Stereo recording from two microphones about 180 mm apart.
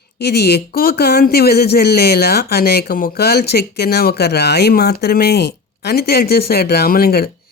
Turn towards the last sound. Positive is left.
turn(degrees=60)  # may be behind; listen again after turning